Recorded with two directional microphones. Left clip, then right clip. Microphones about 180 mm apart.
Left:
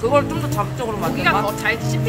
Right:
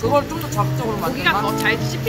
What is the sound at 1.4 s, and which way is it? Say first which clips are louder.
Speech: right 1 dB; 55° left (ahead or behind).